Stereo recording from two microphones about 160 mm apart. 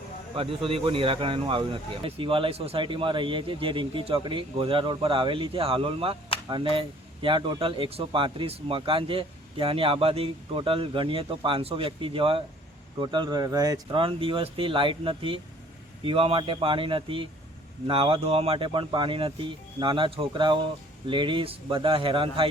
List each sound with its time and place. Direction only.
0.3 s speech: 35° right (ahead or behind)